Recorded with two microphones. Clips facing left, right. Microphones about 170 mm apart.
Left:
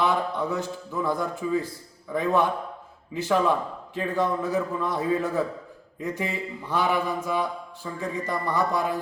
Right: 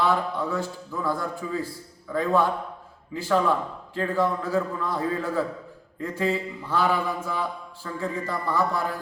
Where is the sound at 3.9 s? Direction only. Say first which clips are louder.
Right 1 dB; 20° left (ahead or behind).